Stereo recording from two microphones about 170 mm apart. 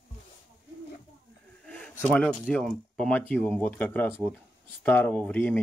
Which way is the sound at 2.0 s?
5° left (ahead or behind).